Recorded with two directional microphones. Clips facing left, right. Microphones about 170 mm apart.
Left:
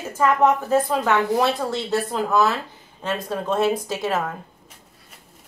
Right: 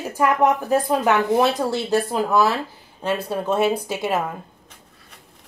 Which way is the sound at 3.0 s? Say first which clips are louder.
Right 2 dB; 5° right (ahead or behind).